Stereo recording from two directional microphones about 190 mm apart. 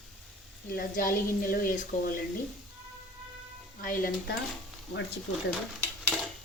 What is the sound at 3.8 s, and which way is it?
Speech, 50° left (ahead or behind).